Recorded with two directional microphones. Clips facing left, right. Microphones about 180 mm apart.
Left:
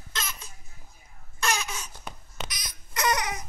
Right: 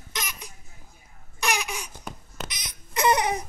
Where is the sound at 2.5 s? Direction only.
20° right (ahead or behind).